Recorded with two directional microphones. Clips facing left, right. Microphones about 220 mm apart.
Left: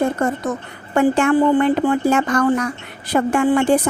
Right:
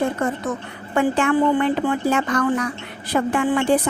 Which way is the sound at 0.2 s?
45° left (ahead or behind).